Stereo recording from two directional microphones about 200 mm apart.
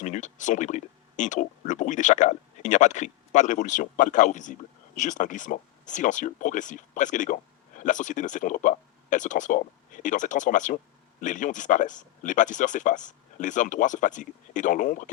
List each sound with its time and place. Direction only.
0.0 s speech: 35° left (ahead or behind)